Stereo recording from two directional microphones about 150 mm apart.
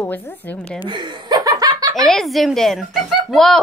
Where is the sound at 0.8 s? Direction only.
30° right (ahead or behind).